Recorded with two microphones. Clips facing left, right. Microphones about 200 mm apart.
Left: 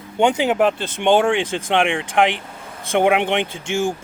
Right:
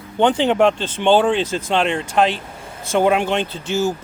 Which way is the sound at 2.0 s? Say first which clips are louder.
Even; 15° left (ahead or behind).